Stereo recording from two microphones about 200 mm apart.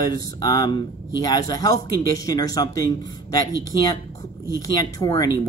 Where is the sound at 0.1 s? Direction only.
20° left (ahead or behind).